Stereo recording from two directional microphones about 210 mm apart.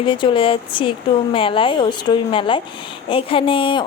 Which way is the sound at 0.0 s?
25° left (ahead or behind).